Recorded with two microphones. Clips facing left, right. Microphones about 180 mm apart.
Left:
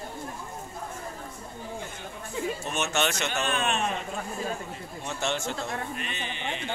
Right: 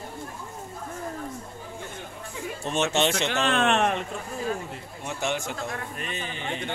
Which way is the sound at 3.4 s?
75° right (ahead or behind).